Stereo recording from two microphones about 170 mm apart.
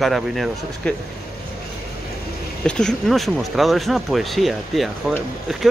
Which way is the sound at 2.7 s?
5° left (ahead or behind).